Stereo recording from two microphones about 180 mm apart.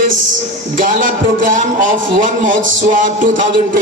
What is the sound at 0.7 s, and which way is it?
Speech, 50° right (ahead or behind).